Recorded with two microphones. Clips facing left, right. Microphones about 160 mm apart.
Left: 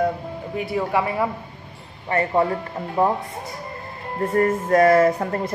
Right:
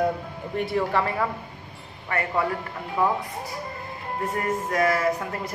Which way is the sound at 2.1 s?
30° left (ahead or behind).